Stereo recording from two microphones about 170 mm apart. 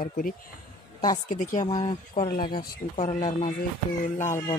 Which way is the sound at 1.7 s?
25° left (ahead or behind).